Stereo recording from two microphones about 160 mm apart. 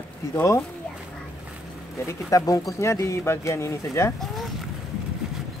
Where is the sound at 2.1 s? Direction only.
20° left (ahead or behind).